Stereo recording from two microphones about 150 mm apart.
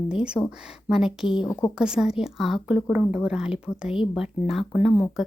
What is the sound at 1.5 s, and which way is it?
Speech, 20° left (ahead or behind).